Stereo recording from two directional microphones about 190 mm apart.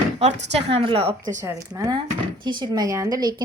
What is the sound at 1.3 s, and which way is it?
A woman's voice, 15° right (ahead or behind).